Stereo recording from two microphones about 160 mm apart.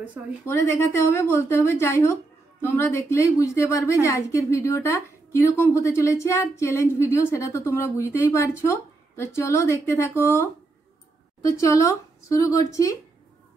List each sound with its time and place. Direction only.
0.5 s a woman's voice: 15° left (ahead or behind)